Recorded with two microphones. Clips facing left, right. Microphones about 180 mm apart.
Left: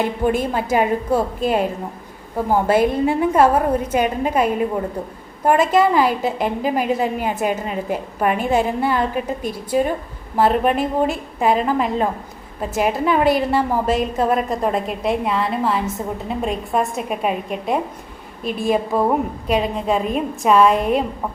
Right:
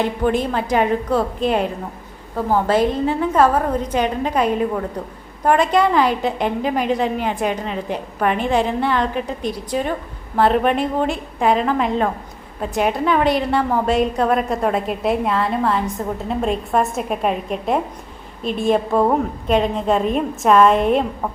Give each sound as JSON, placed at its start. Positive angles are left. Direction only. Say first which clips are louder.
{"t": 0.0, "sound": "a woman's voice", "louder": "even", "side_deg": 10}